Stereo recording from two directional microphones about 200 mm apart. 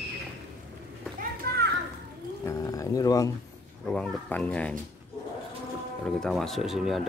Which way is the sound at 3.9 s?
5° left (ahead or behind).